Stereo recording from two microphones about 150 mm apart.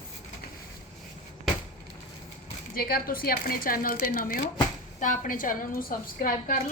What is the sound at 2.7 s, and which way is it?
Speech, 80° left.